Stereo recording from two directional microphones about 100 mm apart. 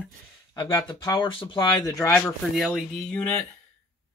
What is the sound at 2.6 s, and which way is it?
Speech, centre (ahead or behind).